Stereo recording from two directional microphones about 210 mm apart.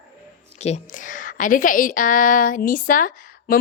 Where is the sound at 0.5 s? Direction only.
30° left (ahead or behind).